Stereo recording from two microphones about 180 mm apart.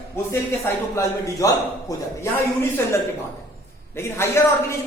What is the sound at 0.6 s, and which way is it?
Speech, 15° left (ahead or behind).